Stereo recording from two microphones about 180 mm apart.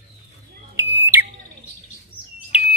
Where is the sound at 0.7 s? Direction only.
15° right (ahead or behind).